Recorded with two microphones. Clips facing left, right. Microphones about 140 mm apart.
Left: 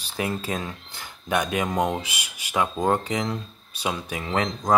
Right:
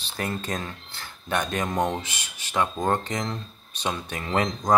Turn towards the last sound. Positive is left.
turn(degrees=0)  # may be behind; listen again after turning